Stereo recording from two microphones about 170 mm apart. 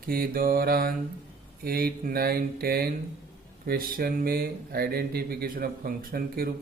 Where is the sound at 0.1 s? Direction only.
60° right (ahead or behind).